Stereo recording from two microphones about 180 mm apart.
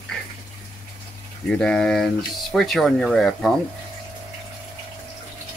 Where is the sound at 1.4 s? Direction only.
5° left (ahead or behind).